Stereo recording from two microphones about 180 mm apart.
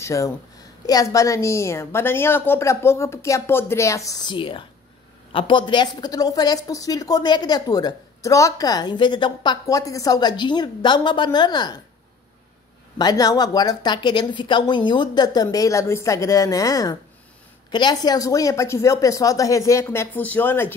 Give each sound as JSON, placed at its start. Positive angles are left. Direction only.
{"t": 0.0, "sound": "a woman's voice", "side_deg": 15}
{"t": 12.9, "sound": "a woman's voice", "side_deg": 20}